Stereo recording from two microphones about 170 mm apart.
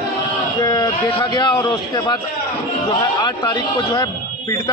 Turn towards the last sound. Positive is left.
turn(degrees=20)  # may be behind; listen again after turning